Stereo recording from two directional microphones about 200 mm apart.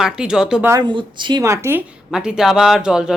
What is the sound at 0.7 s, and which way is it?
Speech, 20° right (ahead or behind).